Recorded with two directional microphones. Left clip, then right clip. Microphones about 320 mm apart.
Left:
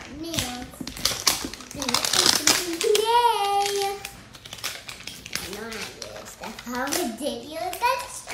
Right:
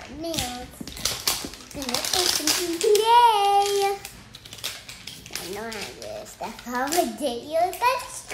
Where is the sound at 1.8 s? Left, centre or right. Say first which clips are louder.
Left 2 dB; left.